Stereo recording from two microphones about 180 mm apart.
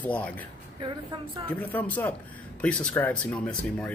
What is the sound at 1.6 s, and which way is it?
Speech, 10° left (ahead or behind).